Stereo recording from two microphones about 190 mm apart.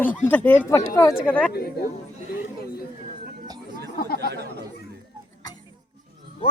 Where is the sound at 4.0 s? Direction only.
50° left (ahead or behind).